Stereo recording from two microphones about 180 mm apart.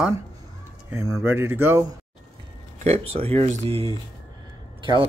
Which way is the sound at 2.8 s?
35° right (ahead or behind).